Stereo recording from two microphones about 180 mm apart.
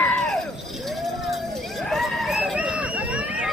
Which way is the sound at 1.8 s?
Centre (ahead or behind).